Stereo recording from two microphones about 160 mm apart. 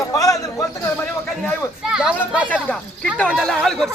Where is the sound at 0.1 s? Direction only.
20° left (ahead or behind).